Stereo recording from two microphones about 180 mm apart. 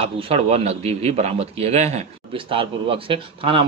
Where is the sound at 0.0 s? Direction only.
35° right (ahead or behind).